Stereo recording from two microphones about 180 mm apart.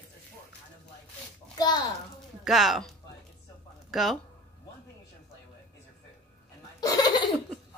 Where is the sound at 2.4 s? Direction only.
Centre (ahead or behind).